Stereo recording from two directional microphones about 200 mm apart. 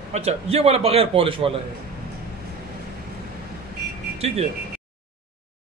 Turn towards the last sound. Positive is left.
turn(degrees=-30)  # may be behind; listen again after turning